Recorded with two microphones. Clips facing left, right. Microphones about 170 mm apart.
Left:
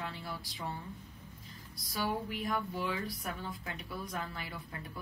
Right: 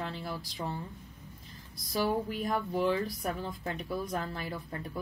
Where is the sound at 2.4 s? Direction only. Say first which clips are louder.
Right 6 dB; 45° right (ahead or behind).